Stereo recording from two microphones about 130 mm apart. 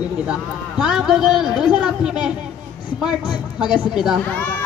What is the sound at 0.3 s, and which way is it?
A man's voice, 5° right (ahead or behind).